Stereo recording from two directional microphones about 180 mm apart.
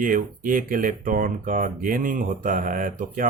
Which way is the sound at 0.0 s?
50° right (ahead or behind).